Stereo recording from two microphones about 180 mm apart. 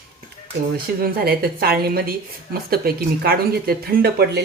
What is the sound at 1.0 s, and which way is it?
A woman's voice, 60° right (ahead or behind).